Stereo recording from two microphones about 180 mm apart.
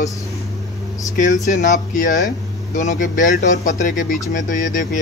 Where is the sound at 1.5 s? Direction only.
45° left (ahead or behind).